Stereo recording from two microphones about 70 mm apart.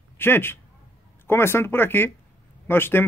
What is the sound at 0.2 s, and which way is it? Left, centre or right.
Speech, left.